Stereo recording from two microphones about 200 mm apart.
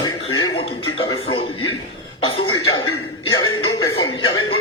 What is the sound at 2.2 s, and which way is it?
Throat clearing, 30° left (ahead or behind).